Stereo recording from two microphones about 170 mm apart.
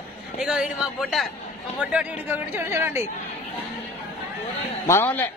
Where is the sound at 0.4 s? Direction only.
5° right (ahead or behind).